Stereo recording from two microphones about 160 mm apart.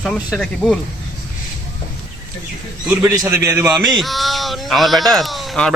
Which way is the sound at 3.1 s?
20° right (ahead or behind).